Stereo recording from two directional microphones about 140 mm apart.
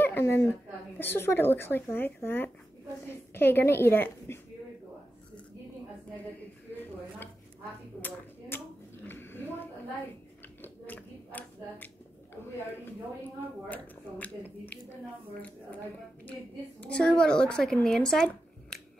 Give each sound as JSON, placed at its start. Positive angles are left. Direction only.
{"t": 0.0, "sound": "a woman's voice", "side_deg": 15}
{"t": 8.0, "sound": "a sound", "side_deg": 15}
{"t": 13.7, "sound": "a woman's voice", "side_deg": 10}
{"t": 16.8, "sound": "speech", "side_deg": 5}